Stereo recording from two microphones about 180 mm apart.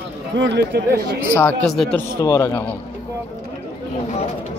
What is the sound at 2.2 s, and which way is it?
Speech, 15° left (ahead or behind).